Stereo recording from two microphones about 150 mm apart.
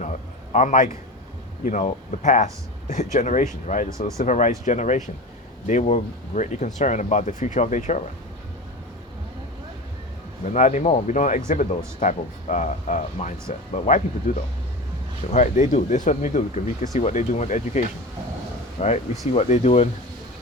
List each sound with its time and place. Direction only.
0.0 s a sound: 55° left (ahead or behind)
1.6 s speech: 55° left (ahead or behind)
10.4 s speech: 55° left (ahead or behind)